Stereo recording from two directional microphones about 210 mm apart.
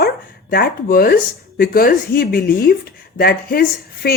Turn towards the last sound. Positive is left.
turn(degrees=45)  # may be behind; listen again after turning